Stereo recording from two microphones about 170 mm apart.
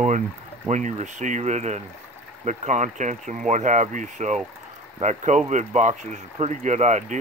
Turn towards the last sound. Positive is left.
turn(degrees=-45)  # may be behind; listen again after turning